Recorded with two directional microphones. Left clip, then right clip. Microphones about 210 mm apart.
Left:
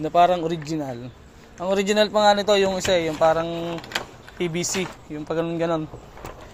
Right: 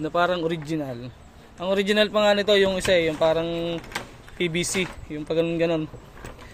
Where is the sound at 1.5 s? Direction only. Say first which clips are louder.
Left 1 dB; 5° right (ahead or behind).